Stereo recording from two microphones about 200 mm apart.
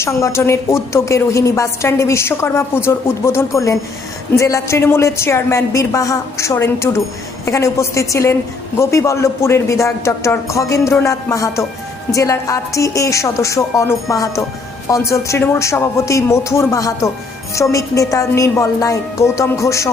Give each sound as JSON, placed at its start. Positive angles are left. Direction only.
{"t": 0.0, "sound": "a woman's voice", "side_deg": 15}